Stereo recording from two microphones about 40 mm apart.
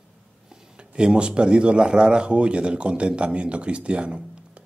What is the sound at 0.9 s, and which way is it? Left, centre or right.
Speech, right.